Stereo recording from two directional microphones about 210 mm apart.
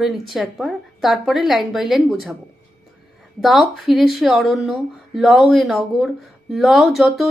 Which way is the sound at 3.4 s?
Centre (ahead or behind).